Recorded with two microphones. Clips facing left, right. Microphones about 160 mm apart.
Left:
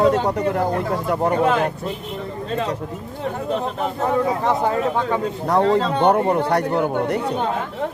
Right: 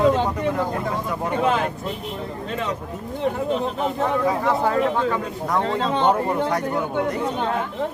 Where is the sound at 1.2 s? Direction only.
45° left (ahead or behind).